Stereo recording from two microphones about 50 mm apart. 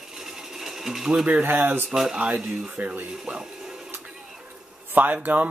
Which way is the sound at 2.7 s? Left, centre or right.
Right.